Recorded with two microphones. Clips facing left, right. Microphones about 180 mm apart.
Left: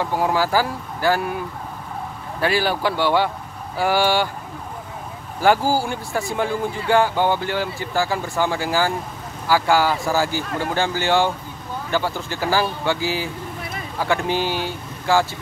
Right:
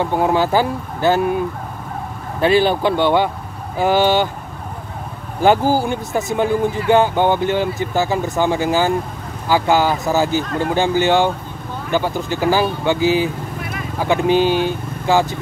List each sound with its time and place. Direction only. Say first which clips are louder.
0.0 s speech: right 4 dB; 20° right (ahead or behind)
2.4 s speech: right 6 dB; 20° right (ahead or behind)
5.4 s speech: right 3 dB; 20° right (ahead or behind)